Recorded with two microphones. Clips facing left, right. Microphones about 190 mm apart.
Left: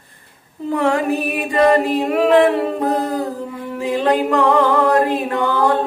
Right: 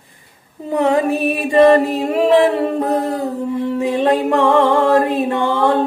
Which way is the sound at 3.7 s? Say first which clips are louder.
Even; 25° right (ahead or behind).